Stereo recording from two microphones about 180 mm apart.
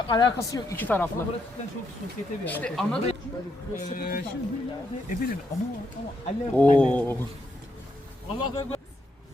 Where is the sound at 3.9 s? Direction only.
55° left (ahead or behind).